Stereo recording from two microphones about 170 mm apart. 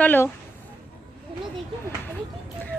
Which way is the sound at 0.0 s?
10° left (ahead or behind).